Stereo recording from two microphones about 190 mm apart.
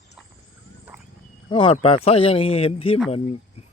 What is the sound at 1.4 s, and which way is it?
Speech, 25° left (ahead or behind).